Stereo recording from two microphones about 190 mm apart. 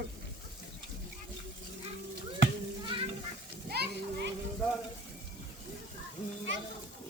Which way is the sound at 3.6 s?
60° right (ahead or behind).